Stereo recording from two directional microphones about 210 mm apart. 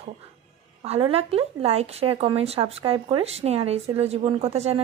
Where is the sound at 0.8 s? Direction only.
30° right (ahead or behind).